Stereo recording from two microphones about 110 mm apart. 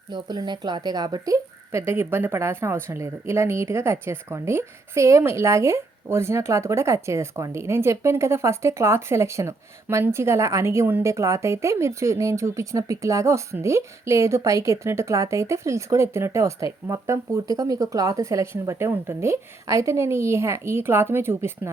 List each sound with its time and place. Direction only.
0.1 s a woman's voice: 40° right (ahead or behind); by 21.7 s 20° right (ahead or behind)